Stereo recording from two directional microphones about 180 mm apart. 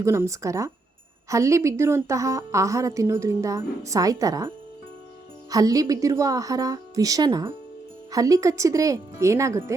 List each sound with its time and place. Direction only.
0.0 s a woman's voice: 15° right (ahead or behind)